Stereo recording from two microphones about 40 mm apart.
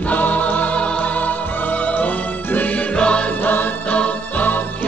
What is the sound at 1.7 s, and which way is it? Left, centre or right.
Music, left.